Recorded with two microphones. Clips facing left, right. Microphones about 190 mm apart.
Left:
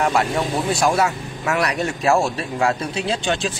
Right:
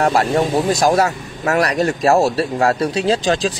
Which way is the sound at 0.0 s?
35° right (ahead or behind).